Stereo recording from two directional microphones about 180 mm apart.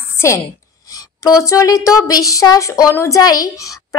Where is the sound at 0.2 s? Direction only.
15° left (ahead or behind).